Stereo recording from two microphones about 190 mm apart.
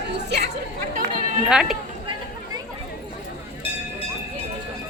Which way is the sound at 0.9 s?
40° right (ahead or behind).